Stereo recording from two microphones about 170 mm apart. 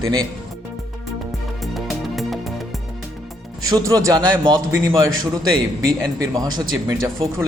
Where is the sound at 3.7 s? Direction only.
20° right (ahead or behind).